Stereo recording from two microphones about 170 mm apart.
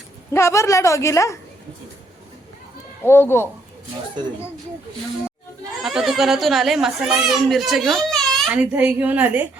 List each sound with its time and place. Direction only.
0.3 s a woman's voice: 15° left (ahead or behind)
3.0 s a woman's voice: 15° left (ahead or behind)
5.8 s a child's voice: centre (ahead or behind)
8.5 s a woman's voice: 10° right (ahead or behind)